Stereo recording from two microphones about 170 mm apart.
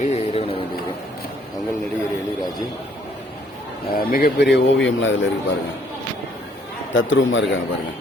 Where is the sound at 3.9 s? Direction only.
60° left (ahead or behind); by 5.2 s 90° left.